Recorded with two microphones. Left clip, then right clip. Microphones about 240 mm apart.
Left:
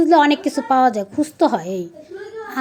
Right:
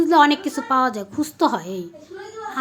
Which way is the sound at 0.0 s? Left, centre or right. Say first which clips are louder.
Left 2 dB; centre.